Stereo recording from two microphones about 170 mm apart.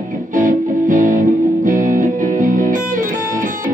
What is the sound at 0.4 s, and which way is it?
Music, 50° right (ahead or behind).